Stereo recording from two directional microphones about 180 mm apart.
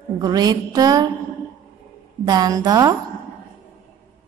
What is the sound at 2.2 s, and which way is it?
Speech, 20° right (ahead or behind).